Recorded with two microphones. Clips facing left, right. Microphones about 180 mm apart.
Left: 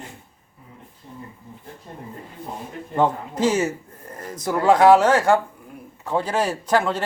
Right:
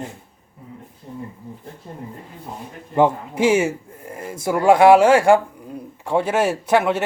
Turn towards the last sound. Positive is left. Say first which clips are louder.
# right 3 dB
turn(degrees=-10)  # may be behind; listen again after turning